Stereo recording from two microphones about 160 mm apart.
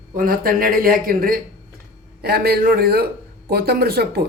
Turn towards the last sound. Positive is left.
turn(degrees=-80)